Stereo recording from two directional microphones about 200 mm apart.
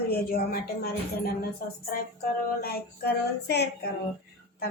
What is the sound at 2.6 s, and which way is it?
A woman's voice, 55° left (ahead or behind).